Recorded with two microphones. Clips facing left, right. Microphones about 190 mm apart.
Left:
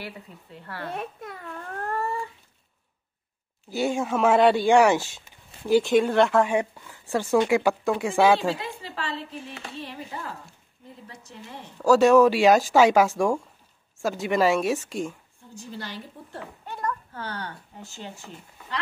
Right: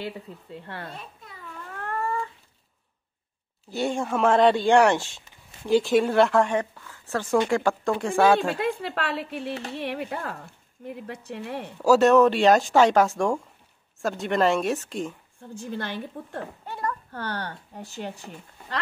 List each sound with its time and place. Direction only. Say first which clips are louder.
0.9 s babbling: left 9 dB; 65° left (ahead or behind)
1.8 s a sound: even; 35° left (ahead or behind)
3.7 s speech: left 1 dB; centre (ahead or behind)
8.5 s a woman's voice: right 7 dB; 60° right (ahead or behind)
11.8 s speech: left 1 dB; 5° right (ahead or behind)
15.6 s speech: right 5 dB; 55° right (ahead or behind)